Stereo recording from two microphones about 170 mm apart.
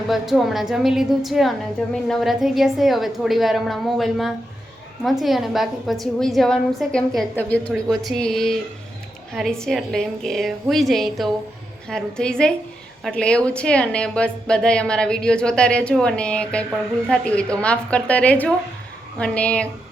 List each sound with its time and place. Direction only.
0.1 s a woman's voice: centre (ahead or behind)